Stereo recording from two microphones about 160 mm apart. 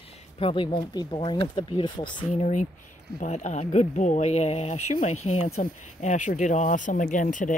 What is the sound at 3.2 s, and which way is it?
Speech, 45° left (ahead or behind).